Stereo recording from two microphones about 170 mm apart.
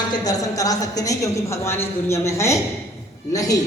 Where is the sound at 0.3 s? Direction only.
20° left (ahead or behind).